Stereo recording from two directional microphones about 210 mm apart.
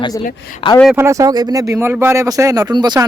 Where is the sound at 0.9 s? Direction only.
15° right (ahead or behind).